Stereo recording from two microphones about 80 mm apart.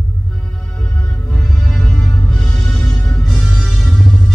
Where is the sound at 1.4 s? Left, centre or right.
Centre.